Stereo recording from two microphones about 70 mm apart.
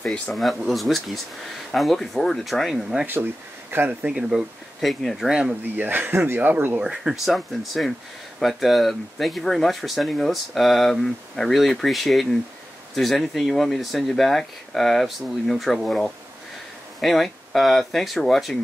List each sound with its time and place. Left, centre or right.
0.3 s speech: centre
5.8 s speech: right
6.8 s speech: centre